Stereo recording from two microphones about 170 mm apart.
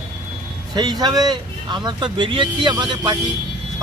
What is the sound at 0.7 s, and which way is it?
Speech, 25° right (ahead or behind).